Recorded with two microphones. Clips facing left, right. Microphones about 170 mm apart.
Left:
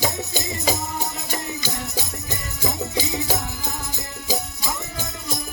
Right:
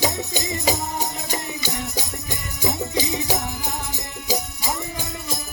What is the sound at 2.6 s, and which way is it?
Jingle bell, 15° right (ahead or behind).